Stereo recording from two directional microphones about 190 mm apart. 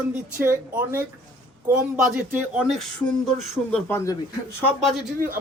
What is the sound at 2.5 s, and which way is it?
Speech, centre (ahead or behind).